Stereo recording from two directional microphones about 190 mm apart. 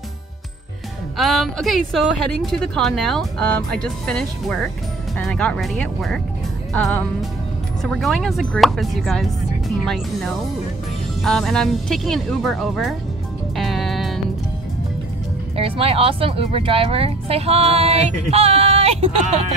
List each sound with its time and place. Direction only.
1.1 s a woman's voice: centre (ahead or behind)
11.2 s a woman's voice: 5° left (ahead or behind)
13.6 s music: centre (ahead or behind)
15.5 s speech: 30° right (ahead or behind)